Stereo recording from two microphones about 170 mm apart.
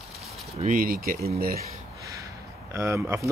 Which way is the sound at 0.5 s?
50° right (ahead or behind).